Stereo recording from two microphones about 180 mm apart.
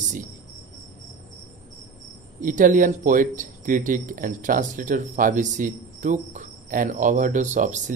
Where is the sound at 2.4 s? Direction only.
45° right (ahead or behind).